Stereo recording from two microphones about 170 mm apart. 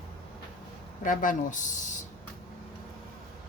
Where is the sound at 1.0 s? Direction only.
50° left (ahead or behind).